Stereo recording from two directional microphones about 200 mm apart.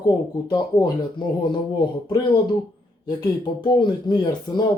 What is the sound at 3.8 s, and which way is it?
Speech, 20° left (ahead or behind).